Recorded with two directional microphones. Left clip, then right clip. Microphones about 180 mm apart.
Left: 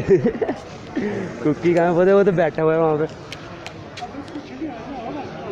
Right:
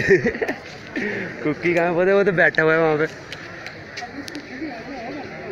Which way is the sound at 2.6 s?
10° right (ahead or behind).